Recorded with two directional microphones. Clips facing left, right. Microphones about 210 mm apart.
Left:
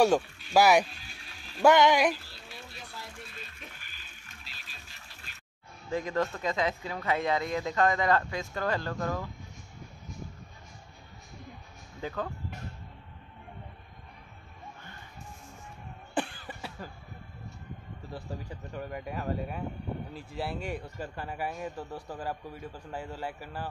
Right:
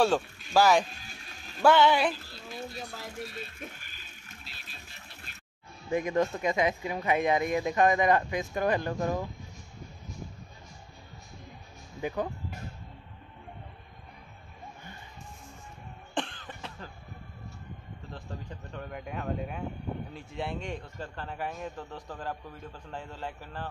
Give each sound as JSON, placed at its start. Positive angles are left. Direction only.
{"t": 0.5, "sound": "a man's voice", "side_deg": 10}
{"t": 0.9, "sound": "music", "side_deg": -45}
{"t": 1.6, "sound": "a man's voice", "side_deg": 15}
{"t": 2.1, "sound": "speech", "side_deg": -40}
{"t": 5.9, "sound": "speech", "side_deg": -15}
{"t": 12.0, "sound": "speech", "side_deg": -15}
{"t": 16.2, "sound": "cough", "side_deg": 10}
{"t": 18.3, "sound": "a man's voice", "side_deg": 10}